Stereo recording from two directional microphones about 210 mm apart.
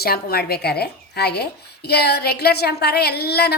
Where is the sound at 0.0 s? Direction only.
45° left (ahead or behind).